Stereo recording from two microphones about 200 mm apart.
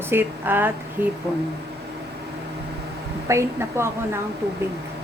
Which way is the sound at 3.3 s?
15° right (ahead or behind).